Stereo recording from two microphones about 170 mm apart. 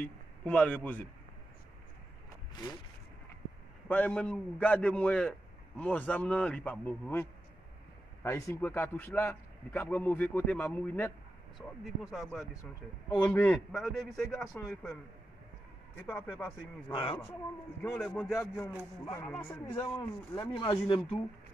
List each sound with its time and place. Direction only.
0.0 s speech: 10° left (ahead or behind)
3.9 s a man's voice: 10° left (ahead or behind)
11.6 s a man's voice: centre (ahead or behind)
13.1 s a man's voice: 10° left (ahead or behind)
16.0 s a man's voice: 10° left (ahead or behind)
16.9 s speech: 30° left (ahead or behind)
17.9 s a man's voice: centre (ahead or behind)
19.0 s a man's voice: 15° left (ahead or behind)
19.8 s speech: 25° left (ahead or behind)